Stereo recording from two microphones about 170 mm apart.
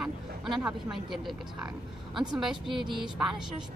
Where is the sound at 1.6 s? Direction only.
25° right (ahead or behind).